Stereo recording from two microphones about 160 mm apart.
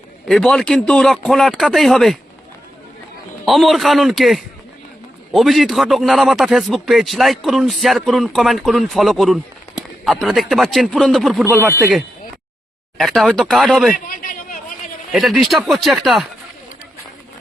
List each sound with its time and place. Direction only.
0.3 s a man's voice: centre (ahead or behind)
3.4 s a man's voice: centre (ahead or behind)
13.0 s a man's voice: centre (ahead or behind)
13.9 s a sound: 60° left (ahead or behind)
15.1 s a man's voice: centre (ahead or behind)